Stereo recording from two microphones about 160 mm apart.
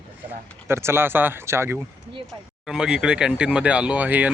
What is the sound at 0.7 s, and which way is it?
Speech, 15° right (ahead or behind).